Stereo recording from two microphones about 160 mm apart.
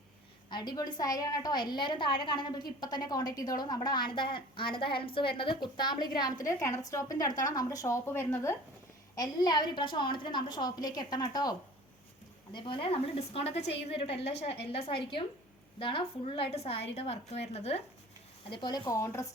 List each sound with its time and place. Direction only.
0.5 s a woman's voice: 25° left (ahead or behind)
12.5 s a woman's voice: 30° left (ahead or behind)
18.5 s a woman's voice: 25° left (ahead or behind)